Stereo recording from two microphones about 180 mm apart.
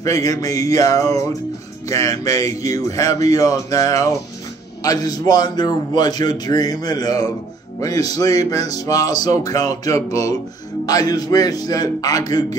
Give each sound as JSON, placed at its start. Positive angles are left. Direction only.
{"t": 0.0, "sound": "speech", "side_deg": 20}
{"t": 4.8, "sound": "music", "side_deg": 20}